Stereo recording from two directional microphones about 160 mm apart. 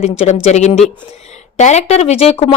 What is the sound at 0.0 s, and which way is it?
A woman's voice, 40° left (ahead or behind).